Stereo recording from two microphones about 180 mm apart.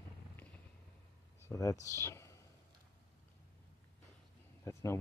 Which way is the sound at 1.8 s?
15° left (ahead or behind).